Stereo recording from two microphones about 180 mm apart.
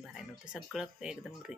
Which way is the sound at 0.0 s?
Centre (ahead or behind).